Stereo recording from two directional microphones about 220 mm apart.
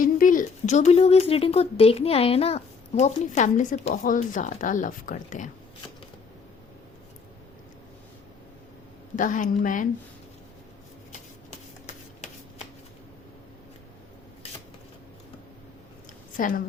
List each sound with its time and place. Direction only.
0.0 s speech: 35° left (ahead or behind)
9.1 s speech: 35° left (ahead or behind)
16.4 s speech: 40° left (ahead or behind)